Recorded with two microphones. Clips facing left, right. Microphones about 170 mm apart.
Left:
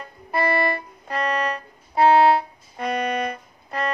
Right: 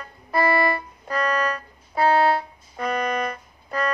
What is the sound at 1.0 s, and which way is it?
Music, 30° left (ahead or behind).